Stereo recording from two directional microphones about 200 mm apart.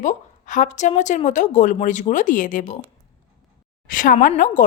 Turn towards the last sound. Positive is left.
turn(degrees=40)  # may be behind; listen again after turning